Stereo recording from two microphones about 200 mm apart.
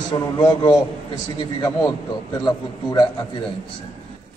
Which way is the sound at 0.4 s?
20° left (ahead or behind).